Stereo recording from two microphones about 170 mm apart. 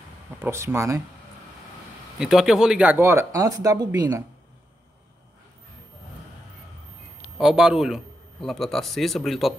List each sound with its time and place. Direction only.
0.4 s speech: 15° right (ahead or behind)
2.1 s speech: centre (ahead or behind); by 4.2 s 20° right (ahead or behind)
7.3 s a man's voice: 5° right (ahead or behind)